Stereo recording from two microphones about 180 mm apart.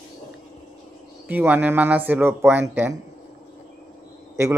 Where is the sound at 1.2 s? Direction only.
10° right (ahead or behind).